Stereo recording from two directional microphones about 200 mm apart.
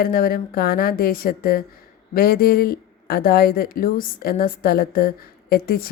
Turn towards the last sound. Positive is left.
turn(degrees=50)  # may be behind; listen again after turning